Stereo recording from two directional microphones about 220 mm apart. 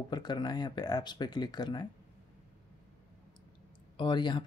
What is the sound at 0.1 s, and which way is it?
Speech, 20° left (ahead or behind).